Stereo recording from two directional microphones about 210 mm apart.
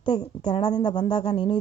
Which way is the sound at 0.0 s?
20° left (ahead or behind).